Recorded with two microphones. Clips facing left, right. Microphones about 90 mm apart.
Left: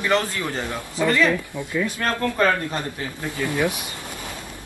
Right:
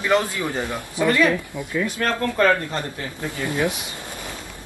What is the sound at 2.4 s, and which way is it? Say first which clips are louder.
Speech: right 3 dB; 15° left (ahead or behind).